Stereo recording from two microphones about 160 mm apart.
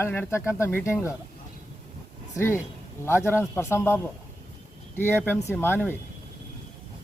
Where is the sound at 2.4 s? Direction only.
15° left (ahead or behind).